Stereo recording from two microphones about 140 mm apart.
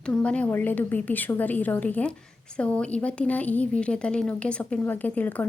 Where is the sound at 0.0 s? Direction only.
5° left (ahead or behind).